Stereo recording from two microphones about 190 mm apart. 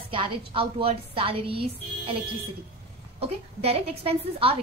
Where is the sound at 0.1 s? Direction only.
30° right (ahead or behind).